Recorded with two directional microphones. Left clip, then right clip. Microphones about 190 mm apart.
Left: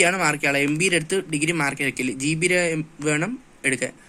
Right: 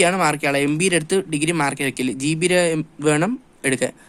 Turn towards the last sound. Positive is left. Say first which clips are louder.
# right 3 dB
turn(degrees=-60)  # may be behind; listen again after turning